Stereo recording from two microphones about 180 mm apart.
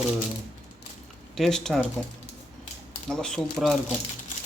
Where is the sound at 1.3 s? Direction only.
Centre (ahead or behind).